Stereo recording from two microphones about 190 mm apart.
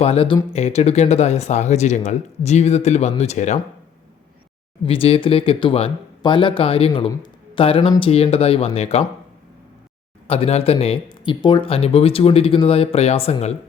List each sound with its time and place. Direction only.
0.0 s speech: 30° left (ahead or behind)
4.9 s speech: 30° left (ahead or behind)
10.2 s speech: 30° left (ahead or behind)